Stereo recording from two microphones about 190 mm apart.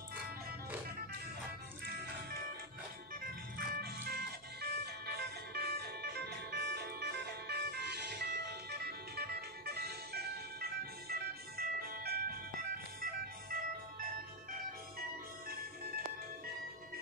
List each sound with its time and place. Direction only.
3.2 s music: 50° right (ahead or behind)